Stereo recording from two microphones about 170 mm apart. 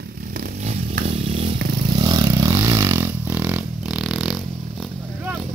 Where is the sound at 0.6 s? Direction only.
40° right (ahead or behind).